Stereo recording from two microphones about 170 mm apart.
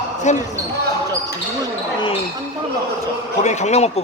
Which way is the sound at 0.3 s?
45° left (ahead or behind).